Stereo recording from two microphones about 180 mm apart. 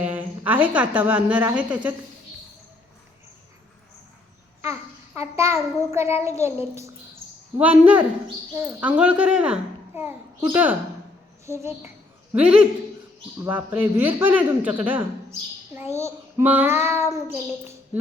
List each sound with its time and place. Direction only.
0.0 s a woman's voice: 10° right (ahead or behind)
4.6 s a child's voice: 15° right (ahead or behind)
6.3 s a child's voice: 35° left (ahead or behind)
7.6 s a child's voice: 10° right (ahead or behind)